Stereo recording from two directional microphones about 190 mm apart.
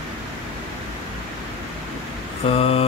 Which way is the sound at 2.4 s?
30° left (ahead or behind).